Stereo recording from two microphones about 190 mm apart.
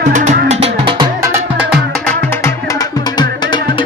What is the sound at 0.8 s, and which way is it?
Music, 25° right (ahead or behind).